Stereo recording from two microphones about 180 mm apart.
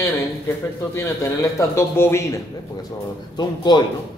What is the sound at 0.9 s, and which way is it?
A man's voice, 15° left (ahead or behind).